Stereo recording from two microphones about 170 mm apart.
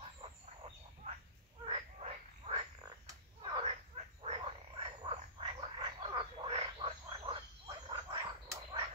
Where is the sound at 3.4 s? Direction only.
30° right (ahead or behind).